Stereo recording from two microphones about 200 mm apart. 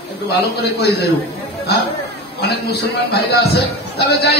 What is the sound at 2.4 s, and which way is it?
A man's voice, 55° left (ahead or behind).